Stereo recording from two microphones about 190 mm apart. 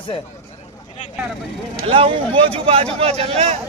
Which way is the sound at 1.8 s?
30° right (ahead or behind).